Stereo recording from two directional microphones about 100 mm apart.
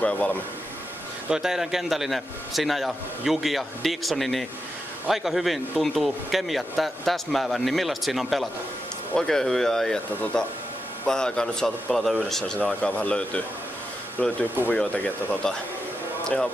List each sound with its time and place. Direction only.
0.0 s speech: 15° left (ahead or behind)
1.3 s speech: 5° right (ahead or behind); by 15.3 s 15° left (ahead or behind)